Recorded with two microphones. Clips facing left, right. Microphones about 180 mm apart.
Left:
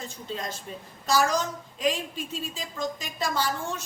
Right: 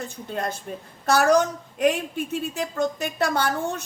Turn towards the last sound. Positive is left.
turn(degrees=-60)  # may be behind; listen again after turning